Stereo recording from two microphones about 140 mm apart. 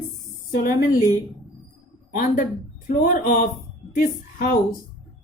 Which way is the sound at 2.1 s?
90° left.